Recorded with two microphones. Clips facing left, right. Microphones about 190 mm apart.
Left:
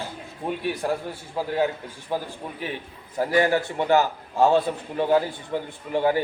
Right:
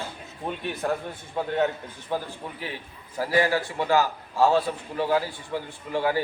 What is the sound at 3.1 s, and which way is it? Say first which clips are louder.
A man's voice: left 2 dB; 20° left (ahead or behind).